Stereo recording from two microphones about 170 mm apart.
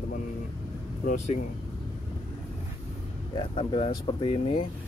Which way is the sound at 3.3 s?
30° left (ahead or behind).